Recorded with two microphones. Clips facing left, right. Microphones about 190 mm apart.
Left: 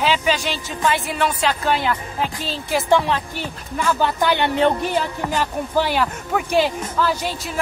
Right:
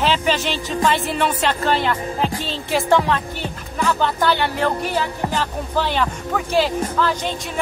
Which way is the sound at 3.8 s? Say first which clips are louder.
Even; 10° left (ahead or behind).